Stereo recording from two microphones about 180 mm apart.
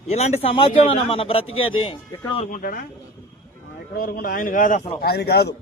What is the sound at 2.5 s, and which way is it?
Speech, 50° left (ahead or behind).